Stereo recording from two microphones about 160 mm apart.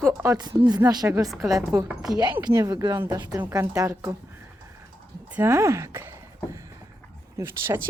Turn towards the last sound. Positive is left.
turn(degrees=-15)  # may be behind; listen again after turning